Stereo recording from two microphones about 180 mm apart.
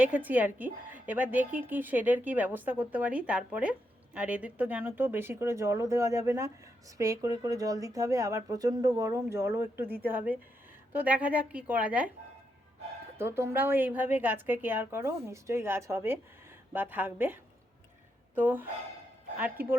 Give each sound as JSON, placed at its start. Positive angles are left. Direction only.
{"t": 0.0, "sound": "a woman's voice", "side_deg": -10}
{"t": 13.1, "sound": "a woman's voice", "side_deg": -15}
{"t": 18.3, "sound": "a woman's voice", "side_deg": -10}